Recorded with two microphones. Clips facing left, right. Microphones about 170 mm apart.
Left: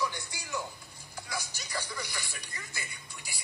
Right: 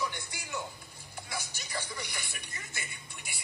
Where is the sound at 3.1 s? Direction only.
25° right (ahead or behind).